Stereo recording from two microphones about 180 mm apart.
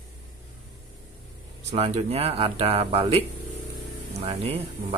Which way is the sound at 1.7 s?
35° right (ahead or behind).